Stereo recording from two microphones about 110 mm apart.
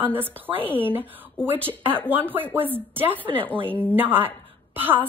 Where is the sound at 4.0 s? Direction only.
20° right (ahead or behind).